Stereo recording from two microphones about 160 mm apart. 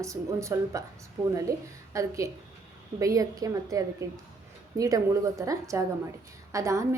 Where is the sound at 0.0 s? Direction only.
20° right (ahead or behind).